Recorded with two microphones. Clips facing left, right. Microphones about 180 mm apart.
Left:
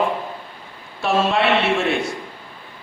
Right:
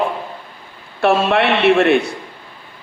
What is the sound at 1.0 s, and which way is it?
A man's voice, 65° right (ahead or behind).